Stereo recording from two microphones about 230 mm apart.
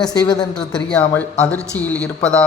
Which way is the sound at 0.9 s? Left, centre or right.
Centre.